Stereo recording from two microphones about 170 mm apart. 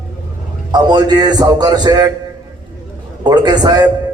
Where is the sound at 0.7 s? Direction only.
25° right (ahead or behind).